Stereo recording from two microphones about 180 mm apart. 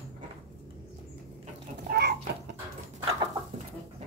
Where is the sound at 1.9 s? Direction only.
65° right (ahead or behind).